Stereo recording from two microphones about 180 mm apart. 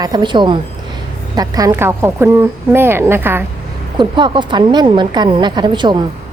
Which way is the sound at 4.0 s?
25° right (ahead or behind).